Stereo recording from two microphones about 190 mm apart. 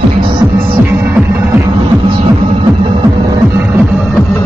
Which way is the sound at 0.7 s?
10° right (ahead or behind).